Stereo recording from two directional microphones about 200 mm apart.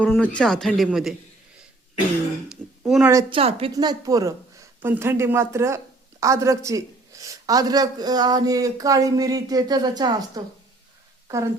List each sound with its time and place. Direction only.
0.0 s speech: 5° left (ahead or behind)
2.5 s a woman's voice: centre (ahead or behind)
3.1 s a woman's voice: 20° right (ahead or behind)